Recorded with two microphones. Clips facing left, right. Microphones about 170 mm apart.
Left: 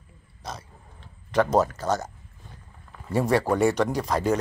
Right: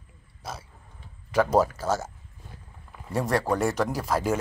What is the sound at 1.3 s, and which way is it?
A man's voice, 10° right (ahead or behind).